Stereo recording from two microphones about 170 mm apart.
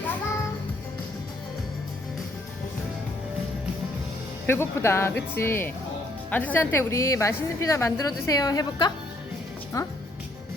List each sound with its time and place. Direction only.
4.4 s a woman's voice: 15° left (ahead or behind)